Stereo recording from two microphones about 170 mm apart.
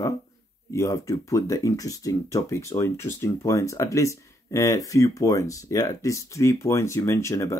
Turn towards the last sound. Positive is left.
turn(degrees=15)  # may be behind; listen again after turning